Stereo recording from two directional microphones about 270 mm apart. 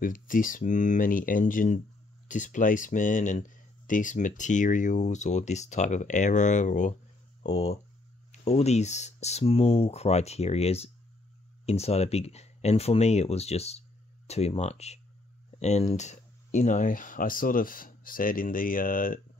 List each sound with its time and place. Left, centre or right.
0.0 s speech: left
8.3 s speech: left